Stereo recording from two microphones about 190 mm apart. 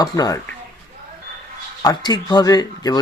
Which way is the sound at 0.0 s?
20° left (ahead or behind).